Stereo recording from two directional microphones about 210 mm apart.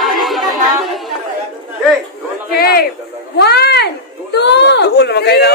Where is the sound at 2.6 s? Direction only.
45° left (ahead or behind).